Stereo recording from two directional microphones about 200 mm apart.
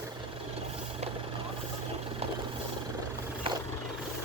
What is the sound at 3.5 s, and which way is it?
Vehicle, 25° right (ahead or behind).